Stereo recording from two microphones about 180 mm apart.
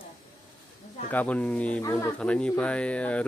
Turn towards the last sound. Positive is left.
turn(degrees=5)  # may be behind; listen again after turning